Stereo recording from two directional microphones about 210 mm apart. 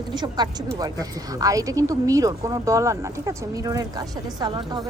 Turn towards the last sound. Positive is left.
turn(degrees=-20)  # may be behind; listen again after turning